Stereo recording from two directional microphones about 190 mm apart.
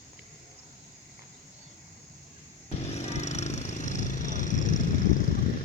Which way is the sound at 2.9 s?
35° left (ahead or behind).